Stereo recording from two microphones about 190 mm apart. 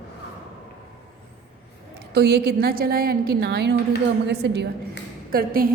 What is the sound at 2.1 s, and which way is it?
A woman's voice, 60° right (ahead or behind).